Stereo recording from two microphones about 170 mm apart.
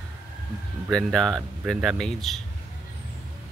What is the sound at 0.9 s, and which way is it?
Speech, 5° left (ahead or behind).